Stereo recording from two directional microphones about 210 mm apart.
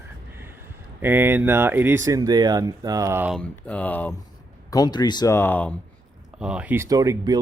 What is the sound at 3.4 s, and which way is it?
Speech, 5° left (ahead or behind).